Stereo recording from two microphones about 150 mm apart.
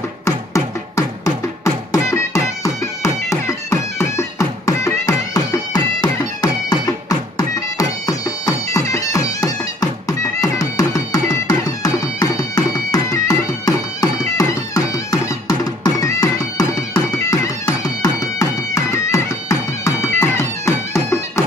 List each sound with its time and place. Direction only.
0.2 s music: 20° left (ahead or behind)